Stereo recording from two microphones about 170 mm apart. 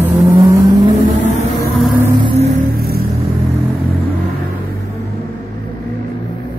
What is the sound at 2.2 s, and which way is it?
Music, 30° right (ahead or behind).